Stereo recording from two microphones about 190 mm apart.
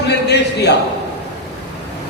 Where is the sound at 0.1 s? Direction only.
60° left (ahead or behind).